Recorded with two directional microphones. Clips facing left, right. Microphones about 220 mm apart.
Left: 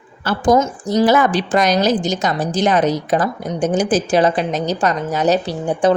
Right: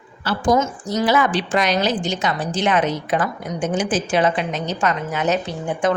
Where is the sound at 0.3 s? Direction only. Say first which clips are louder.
Left 4 dB; 45° left (ahead or behind).